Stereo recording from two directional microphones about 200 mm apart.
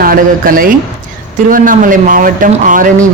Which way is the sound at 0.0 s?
45° right (ahead or behind).